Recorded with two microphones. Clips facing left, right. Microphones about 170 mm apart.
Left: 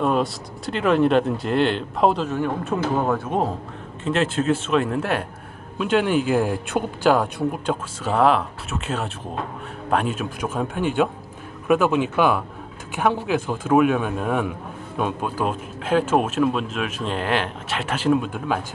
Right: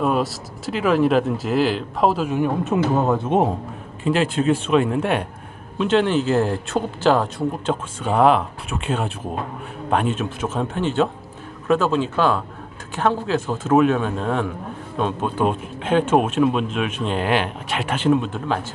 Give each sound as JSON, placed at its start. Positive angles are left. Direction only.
{"t": 0.0, "sound": "speech", "side_deg": -5}
{"t": 2.2, "sound": "a man's voice", "side_deg": -15}
{"t": 4.0, "sound": "speech", "side_deg": 0}
{"t": 18.0, "sound": "speech", "side_deg": 10}